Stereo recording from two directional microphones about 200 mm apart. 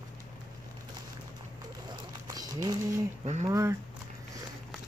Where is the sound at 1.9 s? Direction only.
20° right (ahead or behind).